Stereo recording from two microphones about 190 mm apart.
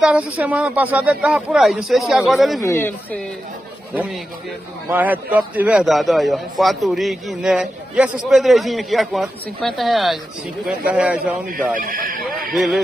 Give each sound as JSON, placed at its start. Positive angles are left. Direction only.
{"t": 0.0, "sound": "a man's voice", "side_deg": -5}
{"t": 2.6, "sound": "speech", "side_deg": 15}
{"t": 3.9, "sound": "a man's voice", "side_deg": -5}
{"t": 11.7, "sound": "speech", "side_deg": -45}
{"t": 12.5, "sound": "a man's voice", "side_deg": 0}